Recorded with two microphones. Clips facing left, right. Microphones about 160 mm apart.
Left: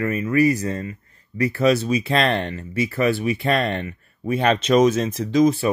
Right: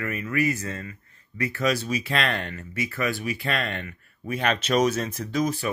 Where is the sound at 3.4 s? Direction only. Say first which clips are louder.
Left 8 dB; 35° left (ahead or behind).